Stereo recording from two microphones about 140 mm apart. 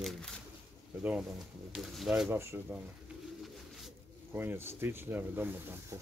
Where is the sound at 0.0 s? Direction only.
Centre (ahead or behind).